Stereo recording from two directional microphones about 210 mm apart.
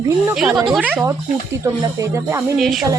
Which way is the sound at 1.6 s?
15° right (ahead or behind).